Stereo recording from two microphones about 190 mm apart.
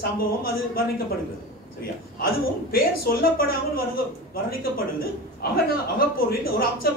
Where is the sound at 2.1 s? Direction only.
50° left (ahead or behind).